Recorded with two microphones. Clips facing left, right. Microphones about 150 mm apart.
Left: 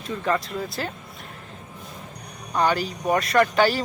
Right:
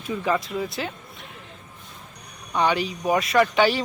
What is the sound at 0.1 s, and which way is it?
Speech, centre (ahead or behind).